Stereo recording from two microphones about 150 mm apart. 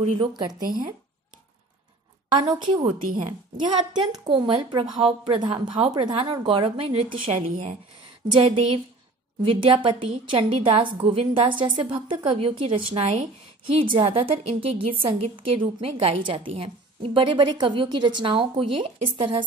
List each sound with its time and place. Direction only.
0.0 s a woman's voice: 40° right (ahead or behind)
0.4 s a woman's voice: 25° right (ahead or behind)
2.3 s a woman's voice: 30° right (ahead or behind)
3.0 s a woman's voice: 65° right (ahead or behind)
3.6 s a woman's voice: 30° right (ahead or behind)